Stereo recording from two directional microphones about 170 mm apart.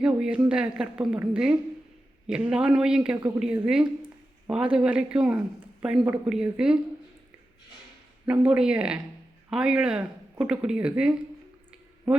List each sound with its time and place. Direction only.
0.0 s speech: 5° right (ahead or behind)
8.3 s speech: 5° right (ahead or behind)